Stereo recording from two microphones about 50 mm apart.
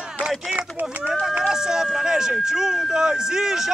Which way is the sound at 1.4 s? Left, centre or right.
Centre.